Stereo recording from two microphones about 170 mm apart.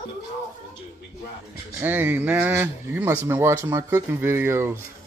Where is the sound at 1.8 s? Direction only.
10° right (ahead or behind).